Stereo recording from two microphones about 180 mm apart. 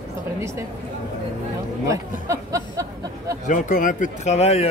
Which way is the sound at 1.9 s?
15° right (ahead or behind).